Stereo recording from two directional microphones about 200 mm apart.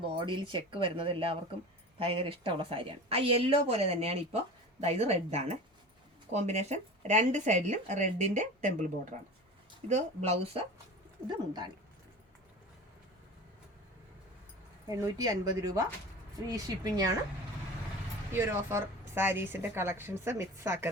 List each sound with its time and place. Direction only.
0.3 s a woman's voice: 25° right (ahead or behind)
14.8 s a woman's voice: 15° right (ahead or behind)
18.3 s a woman's voice: 10° right (ahead or behind)